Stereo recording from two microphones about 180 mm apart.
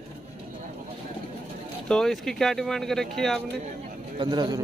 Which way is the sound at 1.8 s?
5° left (ahead or behind).